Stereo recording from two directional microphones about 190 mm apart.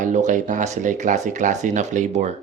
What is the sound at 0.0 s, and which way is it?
A man's voice, 40° right (ahead or behind).